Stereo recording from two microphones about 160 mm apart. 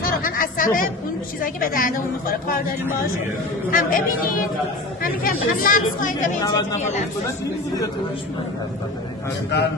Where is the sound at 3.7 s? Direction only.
60° left (ahead or behind).